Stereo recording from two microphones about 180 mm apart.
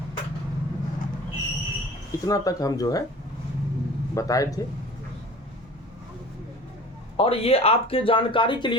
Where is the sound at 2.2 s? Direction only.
20° left (ahead or behind).